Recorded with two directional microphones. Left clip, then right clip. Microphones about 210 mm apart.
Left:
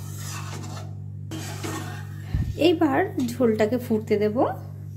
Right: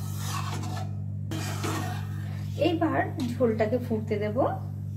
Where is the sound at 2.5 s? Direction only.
55° left (ahead or behind).